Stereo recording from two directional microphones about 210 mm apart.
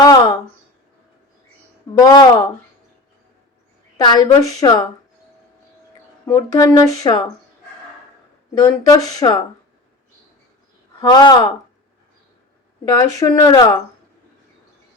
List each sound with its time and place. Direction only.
0.0 s a sound: 20° left (ahead or behind)
2.0 s speech: 15° left (ahead or behind)
3.9 s a woman's voice: 20° left (ahead or behind)
6.2 s speech: 15° left (ahead or behind)
8.6 s a woman's voice: 20° left (ahead or behind)
11.0 s a woman's voice: 20° left (ahead or behind)
12.8 s speech: 15° left (ahead or behind)